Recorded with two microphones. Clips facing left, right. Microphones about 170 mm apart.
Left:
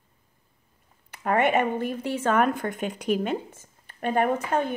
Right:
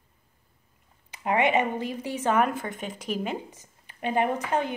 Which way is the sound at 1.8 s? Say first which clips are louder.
Left 3 dB; 60° left (ahead or behind).